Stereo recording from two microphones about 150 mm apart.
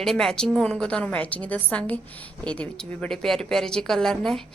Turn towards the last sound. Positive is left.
turn(degrees=0)  # may be behind; listen again after turning